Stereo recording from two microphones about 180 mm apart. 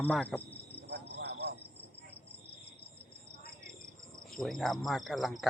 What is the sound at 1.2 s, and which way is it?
Cricket, 70° right (ahead or behind).